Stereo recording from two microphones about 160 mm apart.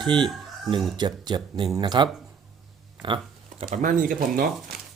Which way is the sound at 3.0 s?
30° right (ahead or behind).